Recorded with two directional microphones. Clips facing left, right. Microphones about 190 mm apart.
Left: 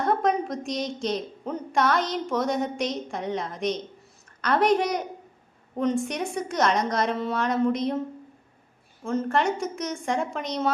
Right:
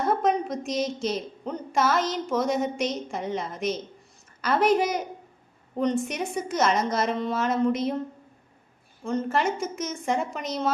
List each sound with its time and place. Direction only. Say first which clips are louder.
0.0 s a woman's voice: even; centre (ahead or behind)
9.0 s a woman's voice: left 1 dB; centre (ahead or behind)